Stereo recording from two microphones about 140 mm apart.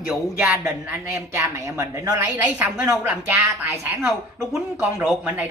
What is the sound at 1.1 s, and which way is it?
Speech, 20° right (ahead or behind).